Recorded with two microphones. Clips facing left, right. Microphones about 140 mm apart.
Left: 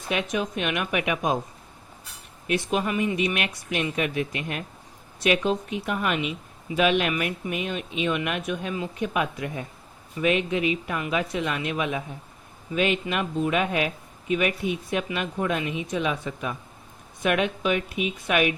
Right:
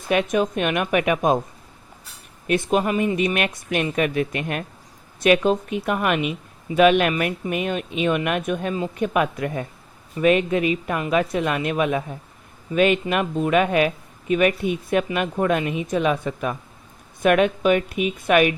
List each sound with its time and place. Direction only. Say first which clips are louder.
0.1 s speech: right 7 dB; 50° right (ahead or behind)
2.5 s speech: right 5 dB; 45° right (ahead or behind)